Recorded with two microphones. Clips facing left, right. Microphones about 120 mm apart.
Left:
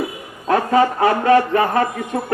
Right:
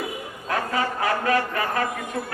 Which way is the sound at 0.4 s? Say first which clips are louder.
Left 10 dB; 30° left (ahead or behind).